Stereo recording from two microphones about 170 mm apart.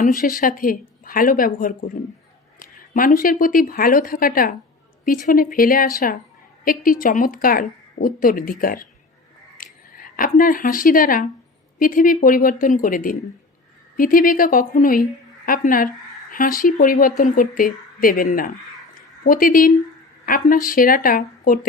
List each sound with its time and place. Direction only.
0.0 s a woman's voice: 55° left (ahead or behind)